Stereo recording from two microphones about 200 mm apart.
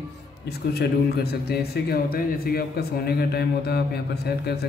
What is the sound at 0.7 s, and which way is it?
A man's voice, 55° left (ahead or behind).